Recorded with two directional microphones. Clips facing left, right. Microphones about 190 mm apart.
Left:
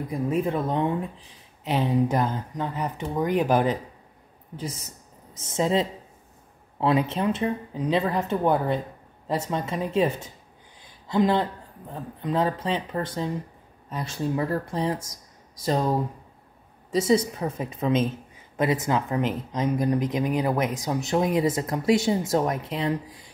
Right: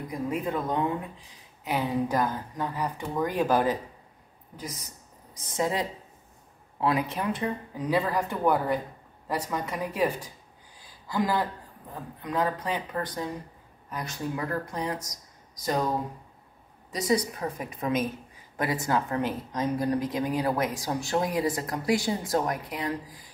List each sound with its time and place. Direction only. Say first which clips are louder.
0.3 s a woman's voice: left 4 dB; 30° left (ahead or behind)
10.8 s a sound: left 6 dB; 20° left (ahead or behind)
11.9 s speech: left 5 dB; 25° left (ahead or behind)
16.9 s speech: left 5 dB; 25° left (ahead or behind)